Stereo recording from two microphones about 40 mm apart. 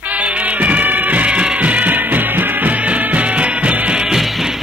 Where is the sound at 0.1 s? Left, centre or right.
Right.